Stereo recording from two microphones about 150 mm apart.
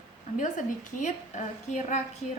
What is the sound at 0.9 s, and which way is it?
A woman's voice, 55° left (ahead or behind).